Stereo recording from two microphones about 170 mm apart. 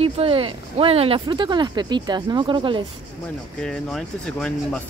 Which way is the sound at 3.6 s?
5° left (ahead or behind).